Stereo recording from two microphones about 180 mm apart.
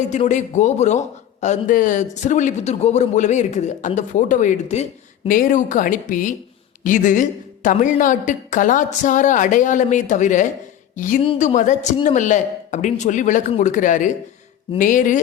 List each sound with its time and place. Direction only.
0.0 s a man's voice: 40° left (ahead or behind)